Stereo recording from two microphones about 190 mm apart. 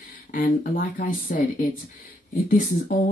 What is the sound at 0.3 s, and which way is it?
Speech, 45° left (ahead or behind).